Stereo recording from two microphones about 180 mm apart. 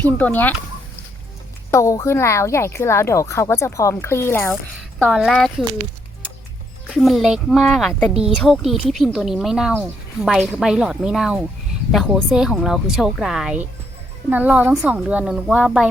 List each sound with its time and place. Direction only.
0.0 s a woman's voice: 10° left (ahead or behind)
1.7 s a woman's voice: 15° left (ahead or behind)
5.1 s a woman's voice: centre (ahead or behind)
6.8 s a woman's voice: centre (ahead or behind)